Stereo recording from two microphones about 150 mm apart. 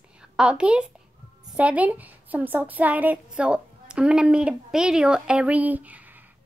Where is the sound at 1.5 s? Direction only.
10° right (ahead or behind).